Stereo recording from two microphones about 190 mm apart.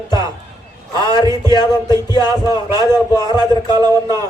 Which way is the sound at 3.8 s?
20° right (ahead or behind).